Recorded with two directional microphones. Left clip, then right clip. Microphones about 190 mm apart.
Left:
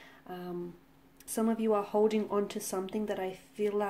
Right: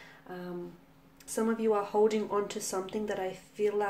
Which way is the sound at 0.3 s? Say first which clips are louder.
Left 1 dB; 35° left (ahead or behind).